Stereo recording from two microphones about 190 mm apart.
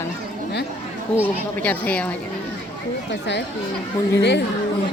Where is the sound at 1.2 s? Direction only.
10° left (ahead or behind).